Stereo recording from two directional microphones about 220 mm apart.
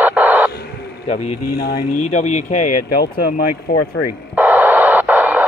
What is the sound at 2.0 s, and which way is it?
Speech, 35° left (ahead or behind).